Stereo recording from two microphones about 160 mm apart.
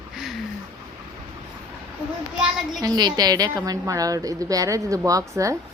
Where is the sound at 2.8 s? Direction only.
25° right (ahead or behind).